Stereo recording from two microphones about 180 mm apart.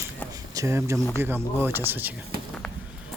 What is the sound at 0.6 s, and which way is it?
Speech, 15° right (ahead or behind).